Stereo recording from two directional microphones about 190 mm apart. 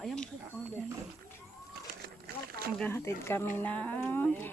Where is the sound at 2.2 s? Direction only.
50° right (ahead or behind).